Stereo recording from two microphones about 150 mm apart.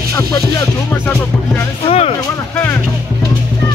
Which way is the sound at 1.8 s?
45° left (ahead or behind).